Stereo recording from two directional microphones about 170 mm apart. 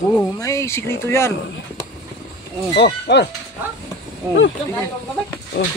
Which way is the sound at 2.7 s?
85° left.